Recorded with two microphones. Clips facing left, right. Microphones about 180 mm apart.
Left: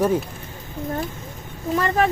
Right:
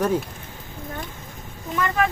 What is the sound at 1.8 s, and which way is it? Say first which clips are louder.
Speech: left 2 dB; 35° left (ahead or behind).